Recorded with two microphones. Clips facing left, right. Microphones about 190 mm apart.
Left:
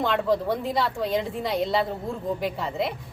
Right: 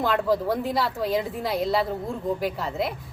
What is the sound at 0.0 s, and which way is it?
A woman's voice, centre (ahead or behind).